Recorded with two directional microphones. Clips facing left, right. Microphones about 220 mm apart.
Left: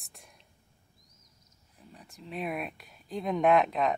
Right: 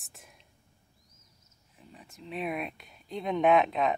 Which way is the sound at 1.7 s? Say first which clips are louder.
Even; centre (ahead or behind).